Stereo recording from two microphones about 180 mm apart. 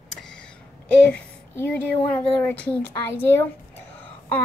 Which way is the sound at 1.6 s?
10° left (ahead or behind).